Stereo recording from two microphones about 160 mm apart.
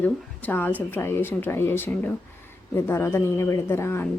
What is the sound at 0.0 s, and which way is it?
A woman's voice, 10° left (ahead or behind).